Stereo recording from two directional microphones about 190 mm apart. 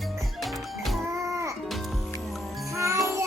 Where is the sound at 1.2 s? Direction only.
15° right (ahead or behind).